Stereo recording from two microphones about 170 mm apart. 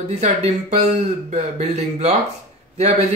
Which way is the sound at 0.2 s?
40° right (ahead or behind).